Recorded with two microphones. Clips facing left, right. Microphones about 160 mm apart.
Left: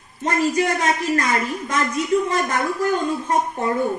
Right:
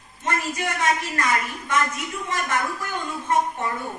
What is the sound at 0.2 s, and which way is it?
A woman's voice, 35° left (ahead or behind).